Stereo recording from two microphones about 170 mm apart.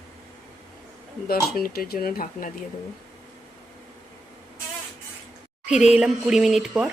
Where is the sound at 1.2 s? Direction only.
60° left (ahead or behind).